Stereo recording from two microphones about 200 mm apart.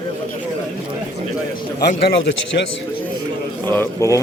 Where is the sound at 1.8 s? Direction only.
55° left (ahead or behind).